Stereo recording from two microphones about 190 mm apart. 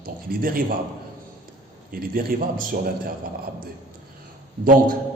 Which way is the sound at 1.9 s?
50° right (ahead or behind).